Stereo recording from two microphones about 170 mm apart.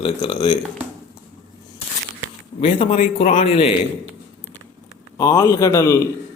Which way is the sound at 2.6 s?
45° left (ahead or behind).